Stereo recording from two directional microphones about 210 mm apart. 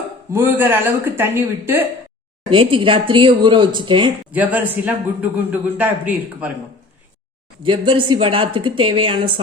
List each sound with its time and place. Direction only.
0.3 s a woman's voice: 10° right (ahead or behind)
2.5 s speech: 25° right (ahead or behind)
4.3 s a woman's voice: 5° right (ahead or behind)
7.6 s speech: 25° right (ahead or behind)